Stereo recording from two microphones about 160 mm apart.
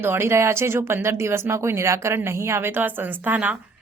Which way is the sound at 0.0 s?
15° right (ahead or behind).